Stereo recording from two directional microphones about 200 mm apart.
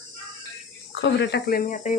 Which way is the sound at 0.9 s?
60° left (ahead or behind).